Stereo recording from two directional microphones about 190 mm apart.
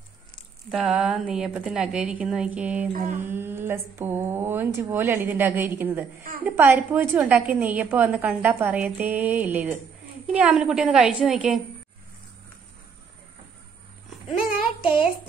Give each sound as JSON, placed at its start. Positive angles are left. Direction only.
{"t": 0.7, "sound": "a woman's voice", "side_deg": 0}
{"t": 2.9, "sound": "mantra", "side_deg": -45}
{"t": 3.2, "sound": "a woman's voice", "side_deg": -10}